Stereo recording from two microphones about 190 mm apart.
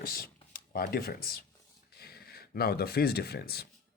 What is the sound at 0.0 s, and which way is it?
Speech, 50° left (ahead or behind).